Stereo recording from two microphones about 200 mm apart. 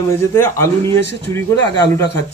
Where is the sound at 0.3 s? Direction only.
10° left (ahead or behind).